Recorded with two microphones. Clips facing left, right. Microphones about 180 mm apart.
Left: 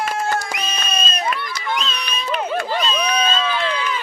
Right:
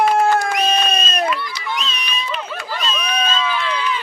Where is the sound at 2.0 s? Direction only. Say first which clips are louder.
Left 3 dB; 45° left (ahead or behind).